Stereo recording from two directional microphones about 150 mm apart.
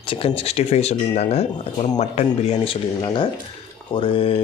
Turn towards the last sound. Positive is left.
turn(degrees=35)  # may be behind; listen again after turning